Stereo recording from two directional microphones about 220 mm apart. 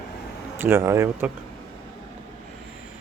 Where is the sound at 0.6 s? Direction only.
10° right (ahead or behind).